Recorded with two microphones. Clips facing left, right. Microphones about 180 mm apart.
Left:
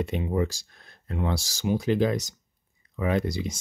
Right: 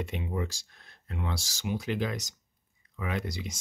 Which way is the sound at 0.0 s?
35° left (ahead or behind).